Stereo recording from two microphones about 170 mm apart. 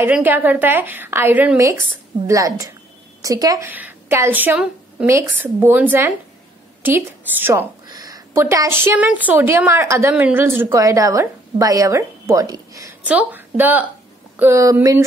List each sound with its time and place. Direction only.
0.0 s a woman's voice: 10° right (ahead or behind)
7.9 s a woman's voice: 20° right (ahead or behind)
13.0 s a woman's voice: 10° right (ahead or behind)